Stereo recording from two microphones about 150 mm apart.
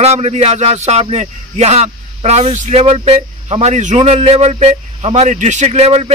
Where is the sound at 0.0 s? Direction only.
45° right (ahead or behind).